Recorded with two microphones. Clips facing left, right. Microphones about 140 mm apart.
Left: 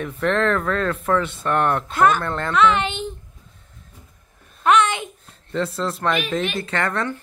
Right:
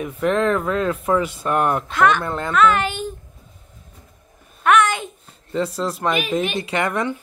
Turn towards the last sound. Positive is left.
turn(degrees=-15)  # may be behind; listen again after turning